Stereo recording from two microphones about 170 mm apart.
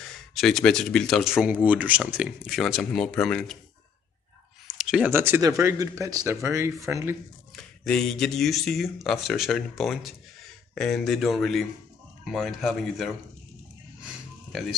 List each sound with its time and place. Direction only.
0.4 s speech: 5° left (ahead or behind)
4.6 s speech: 5° right (ahead or behind)
7.8 s speech: 5° left (ahead or behind)